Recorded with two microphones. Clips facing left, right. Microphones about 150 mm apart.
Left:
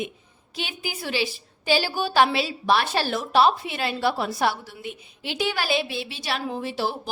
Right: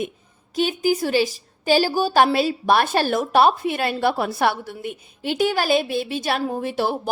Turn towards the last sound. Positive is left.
turn(degrees=-55)  # may be behind; listen again after turning